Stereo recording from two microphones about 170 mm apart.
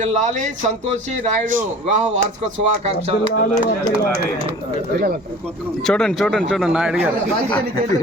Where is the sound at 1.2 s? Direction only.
50° right (ahead or behind).